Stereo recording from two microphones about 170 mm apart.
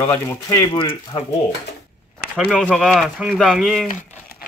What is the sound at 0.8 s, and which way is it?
Speech, 30° left (ahead or behind).